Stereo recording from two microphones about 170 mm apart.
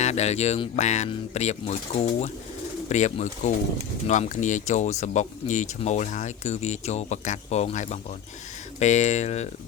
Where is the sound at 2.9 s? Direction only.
45° left (ahead or behind).